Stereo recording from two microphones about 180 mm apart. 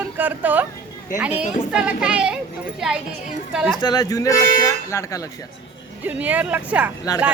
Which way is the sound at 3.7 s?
25° left (ahead or behind).